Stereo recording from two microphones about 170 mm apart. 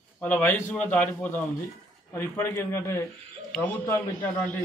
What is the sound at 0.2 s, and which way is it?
A man's voice, 10° left (ahead or behind).